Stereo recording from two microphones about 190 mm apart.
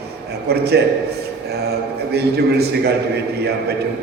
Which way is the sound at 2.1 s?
60° right (ahead or behind).